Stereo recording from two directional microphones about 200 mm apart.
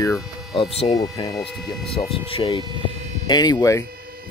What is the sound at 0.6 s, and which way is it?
Speech, 30° left (ahead or behind).